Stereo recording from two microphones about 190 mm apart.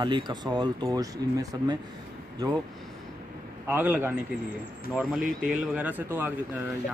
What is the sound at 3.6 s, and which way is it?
Speech, 10° right (ahead or behind).